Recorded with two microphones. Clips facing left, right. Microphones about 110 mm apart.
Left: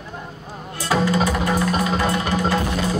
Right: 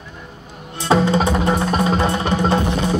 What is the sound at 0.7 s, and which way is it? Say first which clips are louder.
Music: right 4 dB; 25° right (ahead or behind).